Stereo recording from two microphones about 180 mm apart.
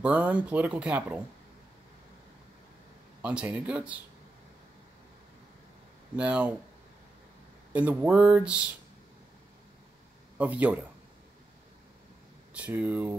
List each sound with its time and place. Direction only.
0.0 s speech: 5° right (ahead or behind)
3.2 s speech: 10° right (ahead or behind)
6.1 s speech: 5° right (ahead or behind)
7.7 s speech: 10° right (ahead or behind)
10.3 s speech: 10° right (ahead or behind)
12.5 s speech: 10° right (ahead or behind)